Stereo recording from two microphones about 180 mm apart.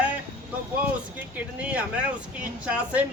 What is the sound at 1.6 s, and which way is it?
Speech, 5° right (ahead or behind).